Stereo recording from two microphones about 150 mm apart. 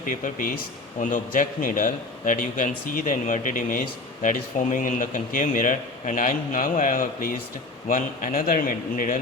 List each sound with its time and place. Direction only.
0.0 s a man's voice: 60° left (ahead or behind)